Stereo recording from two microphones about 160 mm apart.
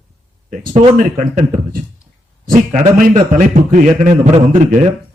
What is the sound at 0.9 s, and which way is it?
Speech, 55° right (ahead or behind).